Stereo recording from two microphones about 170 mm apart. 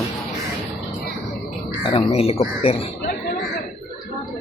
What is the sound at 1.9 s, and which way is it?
Speech, 35° left (ahead or behind).